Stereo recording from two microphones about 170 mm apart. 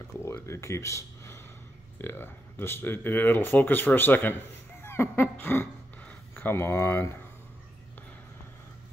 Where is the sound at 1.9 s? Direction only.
15° left (ahead or behind).